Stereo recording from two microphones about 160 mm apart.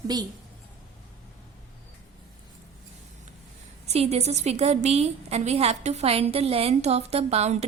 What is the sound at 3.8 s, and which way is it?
A woman's voice, 40° right (ahead or behind).